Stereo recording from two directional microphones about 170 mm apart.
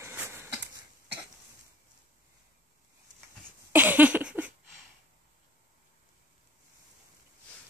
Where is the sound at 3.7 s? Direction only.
10° right (ahead or behind).